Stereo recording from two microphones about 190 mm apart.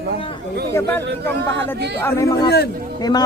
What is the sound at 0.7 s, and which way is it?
A woman's voice, 10° left (ahead or behind).